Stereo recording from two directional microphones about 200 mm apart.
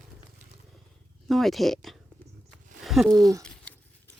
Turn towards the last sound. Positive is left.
turn(degrees=-15)  # may be behind; listen again after turning